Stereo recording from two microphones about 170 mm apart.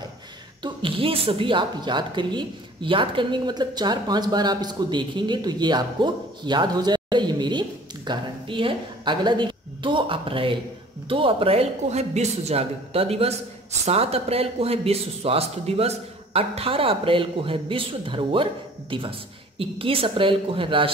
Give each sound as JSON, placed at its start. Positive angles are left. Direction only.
{"t": 0.6, "sound": "a man's voice", "side_deg": -30}